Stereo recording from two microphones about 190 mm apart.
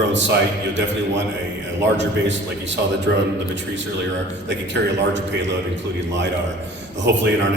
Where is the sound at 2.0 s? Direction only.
70° right (ahead or behind).